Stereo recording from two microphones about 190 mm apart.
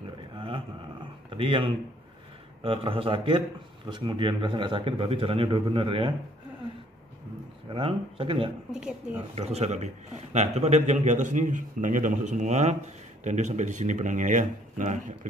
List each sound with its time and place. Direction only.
1.3 s a man's voice: 25° right (ahead or behind)
7.7 s speech: 30° right (ahead or behind)
8.7 s speech: 5° right (ahead or behind)
9.3 s a man's voice: 35° right (ahead or behind)